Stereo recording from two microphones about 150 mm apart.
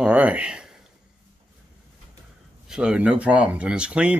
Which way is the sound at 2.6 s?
5° right (ahead or behind).